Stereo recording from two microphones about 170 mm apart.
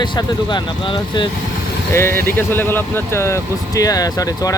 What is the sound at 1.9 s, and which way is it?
Speech, 15° left (ahead or behind).